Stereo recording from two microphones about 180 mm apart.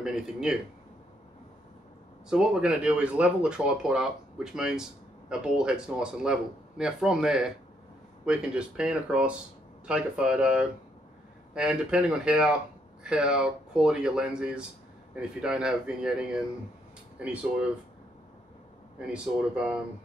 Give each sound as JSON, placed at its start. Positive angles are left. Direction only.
{"t": 0.0, "sound": "speech", "side_deg": -5}
{"t": 2.2, "sound": "speech", "side_deg": -5}
{"t": 18.9, "sound": "speech", "side_deg": -5}